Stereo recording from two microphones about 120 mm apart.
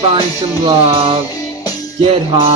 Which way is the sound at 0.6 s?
50° right (ahead or behind).